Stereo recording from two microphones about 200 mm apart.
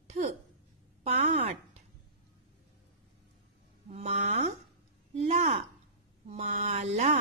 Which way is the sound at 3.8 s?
30° right (ahead or behind).